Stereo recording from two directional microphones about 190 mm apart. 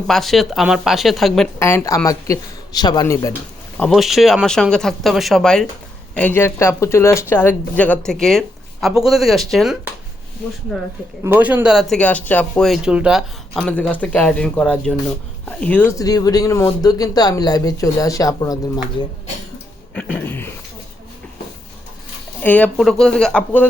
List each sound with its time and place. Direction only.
0.1 s speech: centre (ahead or behind)
1.5 s speech: 15° left (ahead or behind)
3.8 s speech: centre (ahead or behind)
11.2 s speech: 10° right (ahead or behind); by 18.6 s 20° left (ahead or behind)
19.9 s speech: 5° left (ahead or behind)
22.4 s speech: 5° left (ahead or behind)